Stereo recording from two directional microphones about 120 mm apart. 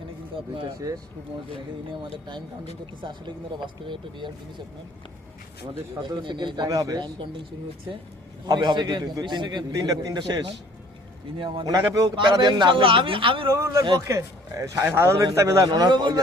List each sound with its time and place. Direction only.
3.0 s a man's voice: 40° right (ahead or behind)
5.9 s a man's voice: 35° right (ahead or behind)
8.4 s a man's voice: 40° right (ahead or behind)
13.5 s a man's voice: 25° right (ahead or behind)